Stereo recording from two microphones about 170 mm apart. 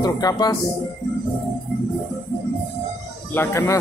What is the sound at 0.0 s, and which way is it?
Speech, 20° left (ahead or behind).